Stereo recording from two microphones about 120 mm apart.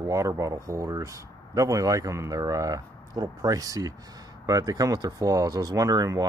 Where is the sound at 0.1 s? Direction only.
25° right (ahead or behind).